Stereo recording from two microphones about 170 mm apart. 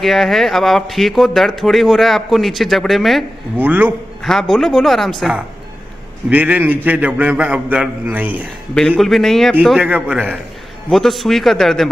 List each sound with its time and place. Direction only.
0.0 s speech: centre (ahead or behind)
3.5 s a man's voice: 10° right (ahead or behind)
4.2 s a man's voice: centre (ahead or behind)
8.7 s speech: 5° left (ahead or behind)